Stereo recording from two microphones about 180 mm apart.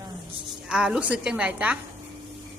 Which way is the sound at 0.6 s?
5° right (ahead or behind).